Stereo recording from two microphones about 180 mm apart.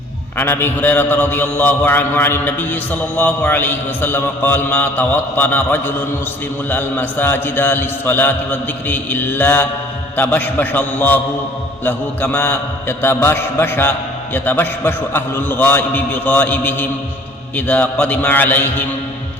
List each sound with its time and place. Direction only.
0.3 s a man's voice: 15° left (ahead or behind)